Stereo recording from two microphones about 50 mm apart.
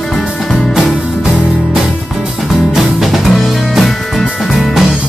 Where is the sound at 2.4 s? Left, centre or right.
Centre.